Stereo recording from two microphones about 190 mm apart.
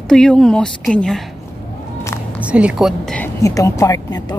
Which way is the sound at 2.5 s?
5° right (ahead or behind).